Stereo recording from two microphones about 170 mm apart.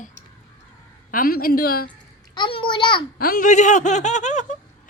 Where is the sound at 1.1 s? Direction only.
60° left (ahead or behind).